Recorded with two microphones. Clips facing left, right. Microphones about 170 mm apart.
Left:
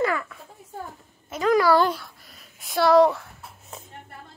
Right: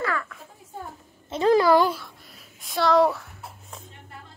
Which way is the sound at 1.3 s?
30° right (ahead or behind).